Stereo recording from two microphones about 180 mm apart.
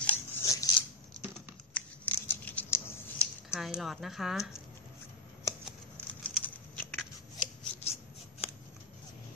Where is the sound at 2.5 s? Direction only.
10° left (ahead or behind).